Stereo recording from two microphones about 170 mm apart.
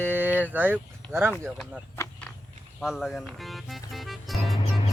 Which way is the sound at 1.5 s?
Centre (ahead or behind).